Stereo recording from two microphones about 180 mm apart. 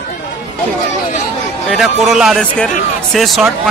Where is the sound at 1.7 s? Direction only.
Centre (ahead or behind).